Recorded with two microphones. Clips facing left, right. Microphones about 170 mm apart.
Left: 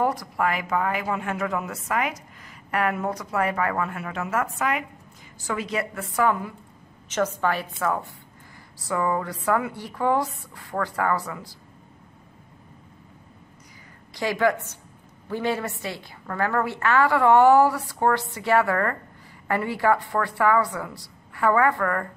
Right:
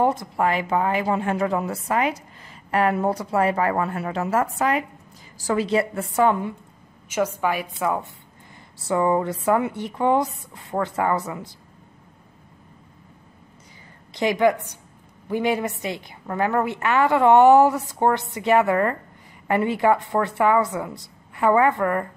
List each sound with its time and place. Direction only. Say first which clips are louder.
0.0 s a woman's voice: right 3 dB; 25° right (ahead or behind)
7.1 s a woman's voice: right 1 dB; 10° right (ahead or behind)
14.1 s a woman's voice: right 4 dB; 20° right (ahead or behind)